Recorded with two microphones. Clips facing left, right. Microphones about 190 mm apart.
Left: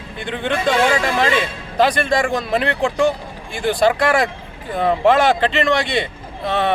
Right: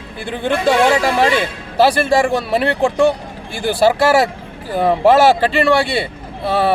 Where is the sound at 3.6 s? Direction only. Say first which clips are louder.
Right 3 dB; 5° right (ahead or behind).